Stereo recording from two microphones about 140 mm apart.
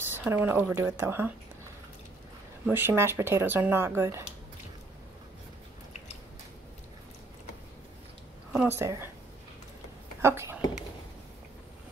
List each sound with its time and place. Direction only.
0.1 s speech: 15° right (ahead or behind)
2.7 s speech: 15° right (ahead or behind)
8.5 s speech: 15° right (ahead or behind)
10.2 s speech: 20° right (ahead or behind)